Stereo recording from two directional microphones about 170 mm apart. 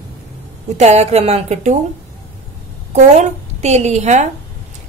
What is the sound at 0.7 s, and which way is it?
A woman's voice, 40° right (ahead or behind).